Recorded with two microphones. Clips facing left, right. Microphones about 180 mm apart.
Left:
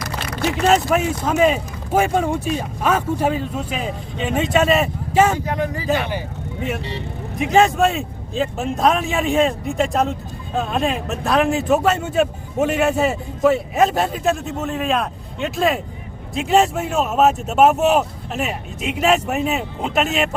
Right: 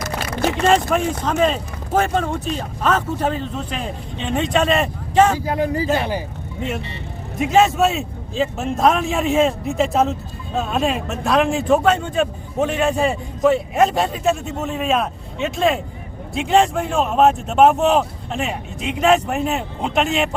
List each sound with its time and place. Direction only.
0.6 s speech: 5° left (ahead or behind)
5.5 s speech: 30° right (ahead or behind)
7.3 s a man's voice: centre (ahead or behind)